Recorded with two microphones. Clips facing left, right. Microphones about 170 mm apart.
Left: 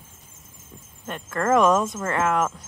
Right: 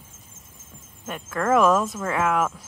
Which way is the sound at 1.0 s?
5° right (ahead or behind).